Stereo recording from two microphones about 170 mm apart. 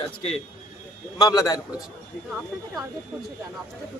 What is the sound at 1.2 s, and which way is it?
Speech, 20° left (ahead or behind).